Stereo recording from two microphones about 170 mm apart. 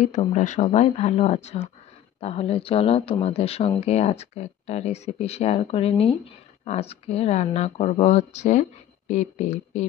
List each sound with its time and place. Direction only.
0.0 s speech: 40° left (ahead or behind)